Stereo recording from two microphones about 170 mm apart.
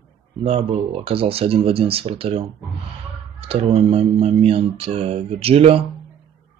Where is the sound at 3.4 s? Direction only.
35° right (ahead or behind).